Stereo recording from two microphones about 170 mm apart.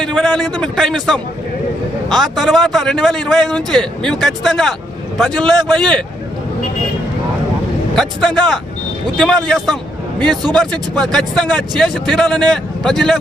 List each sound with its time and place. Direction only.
0.0 s speech: 5° left (ahead or behind)
7.9 s speech: centre (ahead or behind)